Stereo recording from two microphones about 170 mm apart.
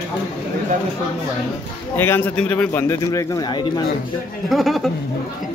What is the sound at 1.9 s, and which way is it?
A man's voice, 15° left (ahead or behind).